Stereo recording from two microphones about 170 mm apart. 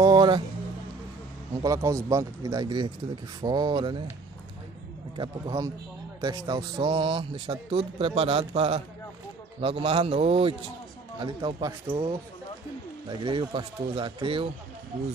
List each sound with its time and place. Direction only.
0.0 s music: 25° right (ahead or behind)
1.6 s speech: 20° right (ahead or behind)
5.1 s speech: 30° right (ahead or behind)
13.2 s speech: 30° right (ahead or behind)